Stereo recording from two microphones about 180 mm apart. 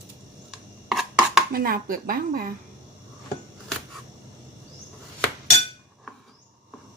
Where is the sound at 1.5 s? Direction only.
55° right (ahead or behind).